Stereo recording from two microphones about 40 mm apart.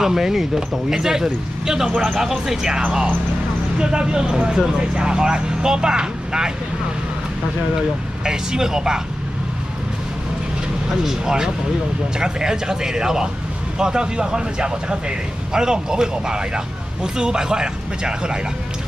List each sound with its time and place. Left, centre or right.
0.0 s speech: centre
1.9 s speech: right
2.1 s speech: centre
3.7 s a man's voice: right
7.7 s speech: centre
11.1 s a man's voice: centre